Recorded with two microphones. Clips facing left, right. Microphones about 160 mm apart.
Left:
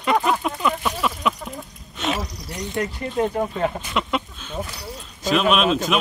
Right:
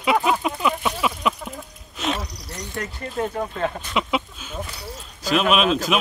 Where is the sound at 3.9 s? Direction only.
5° right (ahead or behind).